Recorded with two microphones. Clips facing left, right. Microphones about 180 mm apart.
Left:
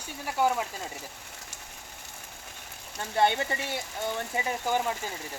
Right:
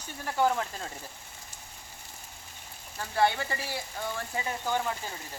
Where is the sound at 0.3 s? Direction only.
10° left (ahead or behind).